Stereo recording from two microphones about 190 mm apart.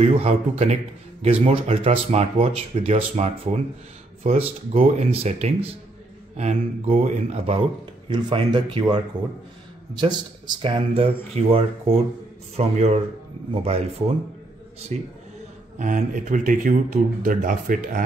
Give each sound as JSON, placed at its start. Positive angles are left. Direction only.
{"t": 0.0, "sound": "a man's voice", "side_deg": -35}